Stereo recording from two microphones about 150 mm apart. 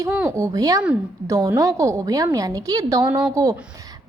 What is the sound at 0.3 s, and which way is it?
A woman's voice, 20° right (ahead or behind).